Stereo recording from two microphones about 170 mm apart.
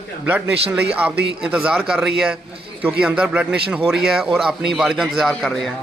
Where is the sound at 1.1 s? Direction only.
75° right (ahead or behind).